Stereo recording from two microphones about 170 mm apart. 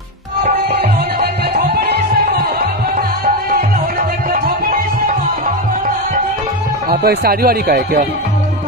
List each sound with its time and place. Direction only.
1.7 s music: 75° right (ahead or behind)
6.9 s speech: 65° right (ahead or behind)